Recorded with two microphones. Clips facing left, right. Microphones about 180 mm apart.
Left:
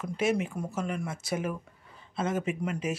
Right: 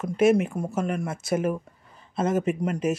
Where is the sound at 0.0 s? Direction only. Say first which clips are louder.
Right 8 dB; 50° right (ahead or behind).